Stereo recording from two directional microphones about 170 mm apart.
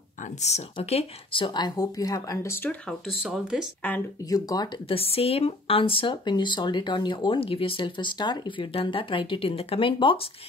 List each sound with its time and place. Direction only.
0.7 s speech: 35° left (ahead or behind); by 2.7 s 15° left (ahead or behind)
3.2 s speech: 5° right (ahead or behind)
4.3 s speech: 20° left (ahead or behind)